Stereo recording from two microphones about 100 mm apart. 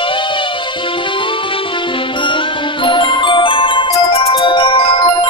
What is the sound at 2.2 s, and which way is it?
Music, 55° left (ahead or behind).